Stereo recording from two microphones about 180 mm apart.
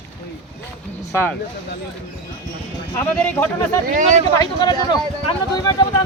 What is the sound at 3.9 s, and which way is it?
Speech, 45° right (ahead or behind).